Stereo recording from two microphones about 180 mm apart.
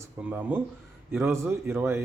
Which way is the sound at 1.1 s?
10° right (ahead or behind).